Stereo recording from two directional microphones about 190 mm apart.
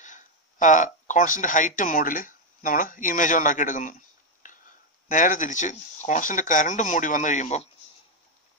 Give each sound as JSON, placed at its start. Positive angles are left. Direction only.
{"t": 0.0, "sound": "speech", "side_deg": 40}
{"t": 4.4, "sound": "a sound", "side_deg": 45}
{"t": 5.0, "sound": "speech", "side_deg": 45}